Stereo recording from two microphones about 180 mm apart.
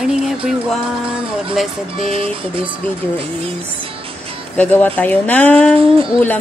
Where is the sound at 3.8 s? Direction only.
30° right (ahead or behind).